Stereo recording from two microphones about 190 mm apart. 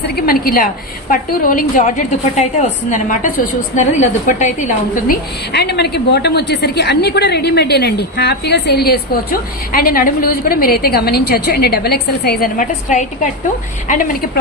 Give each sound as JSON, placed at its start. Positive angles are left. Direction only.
{"t": 0.2, "sound": "a woman's voice", "side_deg": 50}